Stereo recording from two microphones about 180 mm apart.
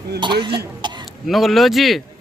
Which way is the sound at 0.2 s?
25° right (ahead or behind).